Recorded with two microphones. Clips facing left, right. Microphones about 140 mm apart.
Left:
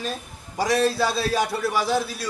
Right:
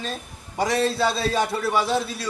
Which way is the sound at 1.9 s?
Centre (ahead or behind).